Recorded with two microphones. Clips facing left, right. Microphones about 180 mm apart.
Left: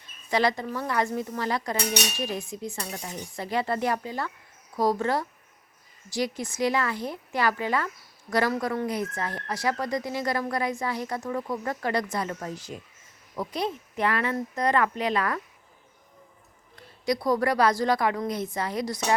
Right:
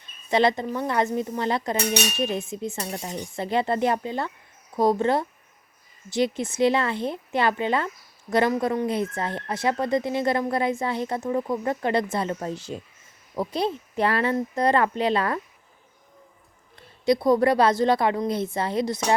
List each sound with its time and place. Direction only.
0.3 s speech: 25° right (ahead or behind)
17.1 s speech: 25° right (ahead or behind)